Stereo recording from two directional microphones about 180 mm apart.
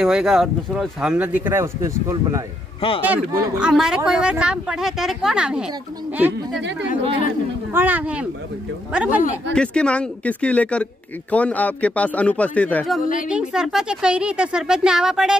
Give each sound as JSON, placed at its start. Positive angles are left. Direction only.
{"t": 0.0, "sound": "speech", "side_deg": 0}
{"t": 7.7, "sound": "speech", "side_deg": -10}
{"t": 9.5, "sound": "speech", "side_deg": 5}
{"t": 13.0, "sound": "a woman's voice", "side_deg": 45}
{"t": 13.3, "sound": "speech", "side_deg": -5}